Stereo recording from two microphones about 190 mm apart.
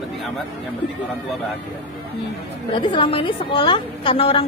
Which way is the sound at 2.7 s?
25° left (ahead or behind).